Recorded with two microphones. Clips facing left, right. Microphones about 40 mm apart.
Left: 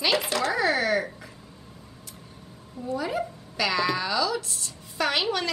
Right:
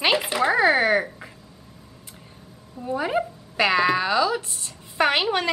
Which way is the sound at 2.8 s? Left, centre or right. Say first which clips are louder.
Right 4 dB; right.